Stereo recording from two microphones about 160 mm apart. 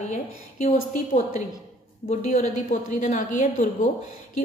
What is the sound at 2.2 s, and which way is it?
A woman's voice, 55° left (ahead or behind).